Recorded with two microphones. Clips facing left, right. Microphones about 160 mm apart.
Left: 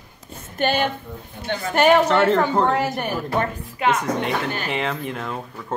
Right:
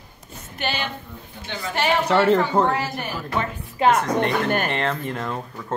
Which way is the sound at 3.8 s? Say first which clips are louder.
Right 3 dB; 30° right (ahead or behind).